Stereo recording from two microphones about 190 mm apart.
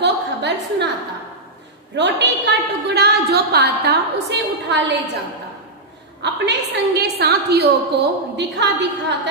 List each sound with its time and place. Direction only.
0.0 s a sound: 65° right (ahead or behind)
2.0 s a woman's voice: 65° right (ahead or behind)
6.2 s a woman's voice: 65° right (ahead or behind)